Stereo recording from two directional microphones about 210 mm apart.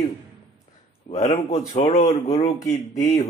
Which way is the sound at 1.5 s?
25° left (ahead or behind).